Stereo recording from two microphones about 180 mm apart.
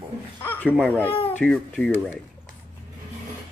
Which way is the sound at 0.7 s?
10° left (ahead or behind).